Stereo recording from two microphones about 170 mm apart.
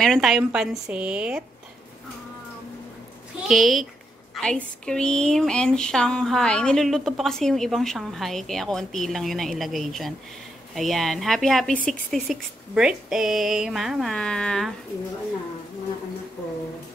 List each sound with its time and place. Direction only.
0.0 s speech: centre (ahead or behind)
3.4 s a woman's voice: centre (ahead or behind)